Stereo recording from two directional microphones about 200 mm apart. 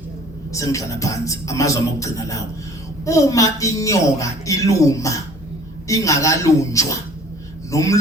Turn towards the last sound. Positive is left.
turn(degrees=15)  # may be behind; listen again after turning